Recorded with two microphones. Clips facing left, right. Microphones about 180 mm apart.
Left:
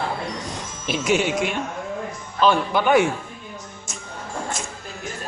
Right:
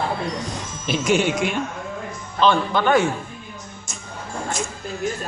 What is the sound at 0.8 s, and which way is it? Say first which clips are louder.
Speech: right 1 dB; centre (ahead or behind).